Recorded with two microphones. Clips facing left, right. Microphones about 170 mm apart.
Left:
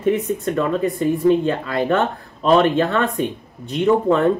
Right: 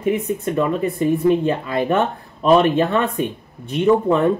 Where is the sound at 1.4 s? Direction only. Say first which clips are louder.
Even; 15° right (ahead or behind).